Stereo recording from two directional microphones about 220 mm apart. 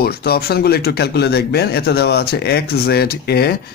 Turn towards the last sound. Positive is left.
turn(degrees=45)  # may be behind; listen again after turning